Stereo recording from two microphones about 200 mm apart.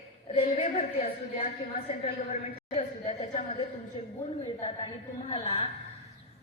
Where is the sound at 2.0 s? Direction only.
35° left (ahead or behind).